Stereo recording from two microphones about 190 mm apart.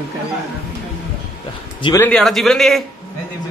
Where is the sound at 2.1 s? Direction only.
Centre (ahead or behind).